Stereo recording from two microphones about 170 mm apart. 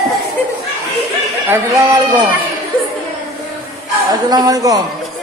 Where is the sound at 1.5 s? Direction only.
20° right (ahead or behind).